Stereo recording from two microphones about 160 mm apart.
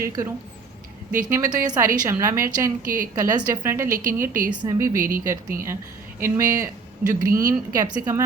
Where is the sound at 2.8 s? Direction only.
60° right (ahead or behind).